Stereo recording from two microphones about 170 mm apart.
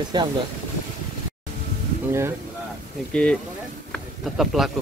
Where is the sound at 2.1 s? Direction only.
15° right (ahead or behind).